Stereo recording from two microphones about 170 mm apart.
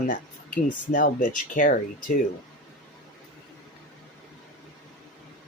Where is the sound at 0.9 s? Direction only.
50° left (ahead or behind).